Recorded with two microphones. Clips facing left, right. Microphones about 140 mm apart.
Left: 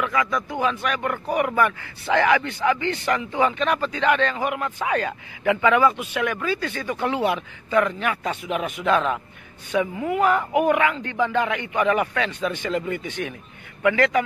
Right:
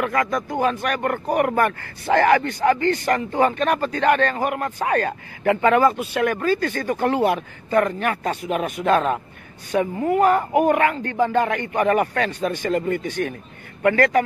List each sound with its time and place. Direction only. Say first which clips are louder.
0.0 s speech: right 2 dB; 50° right (ahead or behind)